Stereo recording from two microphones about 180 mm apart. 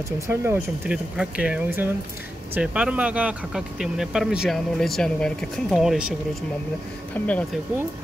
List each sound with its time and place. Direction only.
0.3 s speech: 10° right (ahead or behind)
7.2 s speech: 10° left (ahead or behind)